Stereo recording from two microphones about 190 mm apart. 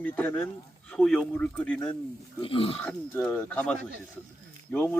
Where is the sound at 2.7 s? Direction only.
10° left (ahead or behind).